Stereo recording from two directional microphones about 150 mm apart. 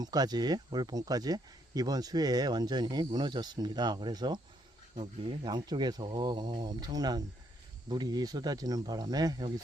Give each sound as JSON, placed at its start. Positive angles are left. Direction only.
{"t": 0.0, "sound": "speech", "side_deg": -25}